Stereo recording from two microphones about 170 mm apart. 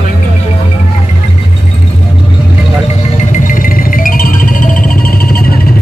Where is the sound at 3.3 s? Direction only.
50° left (ahead or behind).